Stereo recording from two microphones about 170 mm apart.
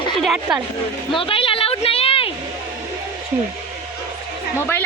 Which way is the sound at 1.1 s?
30° left (ahead or behind).